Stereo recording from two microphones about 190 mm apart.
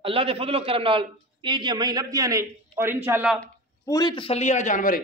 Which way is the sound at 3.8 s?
20° left (ahead or behind).